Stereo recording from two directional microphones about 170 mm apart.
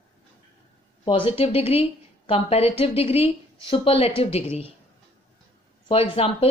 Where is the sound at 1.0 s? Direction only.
30° left (ahead or behind).